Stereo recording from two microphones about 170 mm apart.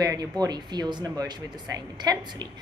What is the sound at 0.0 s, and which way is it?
Speech, 20° right (ahead or behind).